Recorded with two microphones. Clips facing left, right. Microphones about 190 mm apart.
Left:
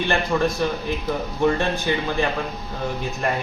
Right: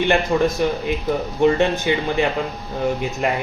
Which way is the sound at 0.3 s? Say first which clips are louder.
Right 3 dB; 15° right (ahead or behind).